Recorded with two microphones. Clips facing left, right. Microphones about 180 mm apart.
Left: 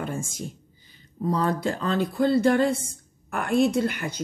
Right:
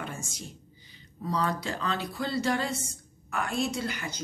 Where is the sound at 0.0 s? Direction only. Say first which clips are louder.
Left 8 dB; 50° left (ahead or behind).